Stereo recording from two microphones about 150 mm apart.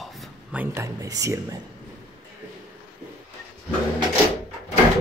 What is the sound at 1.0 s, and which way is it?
Speech, 20° right (ahead or behind).